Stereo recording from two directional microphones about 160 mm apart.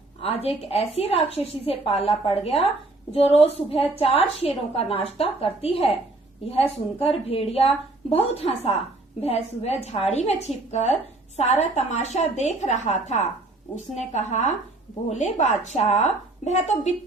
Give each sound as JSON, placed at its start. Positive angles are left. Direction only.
{"t": 0.2, "sound": "a woman's voice", "side_deg": 40}